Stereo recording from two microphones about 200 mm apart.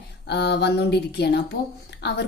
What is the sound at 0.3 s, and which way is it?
A woman's voice, 55° left (ahead or behind).